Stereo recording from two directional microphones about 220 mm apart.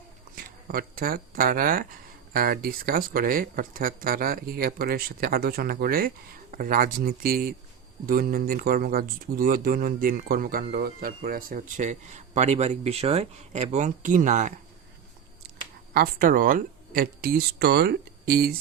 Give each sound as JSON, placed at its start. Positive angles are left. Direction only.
{"t": 0.3, "sound": "speech", "side_deg": -40}
{"t": 15.9, "sound": "speech", "side_deg": -45}